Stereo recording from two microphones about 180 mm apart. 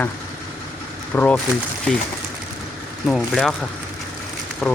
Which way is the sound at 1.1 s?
10° left (ahead or behind).